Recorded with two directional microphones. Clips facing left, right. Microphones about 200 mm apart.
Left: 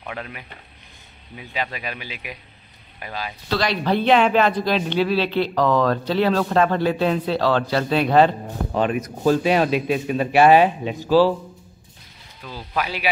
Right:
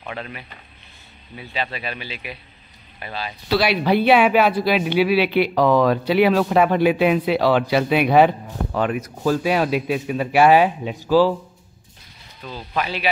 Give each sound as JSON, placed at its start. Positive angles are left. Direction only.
{"t": 0.0, "sound": "speech", "side_deg": 10}
{"t": 3.4, "sound": "speech", "side_deg": -10}
{"t": 8.7, "sound": "speech", "side_deg": 20}
{"t": 9.4, "sound": "speech", "side_deg": -10}
{"t": 12.4, "sound": "speech", "side_deg": 5}